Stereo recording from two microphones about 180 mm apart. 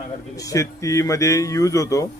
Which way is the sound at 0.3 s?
20° left (ahead or behind).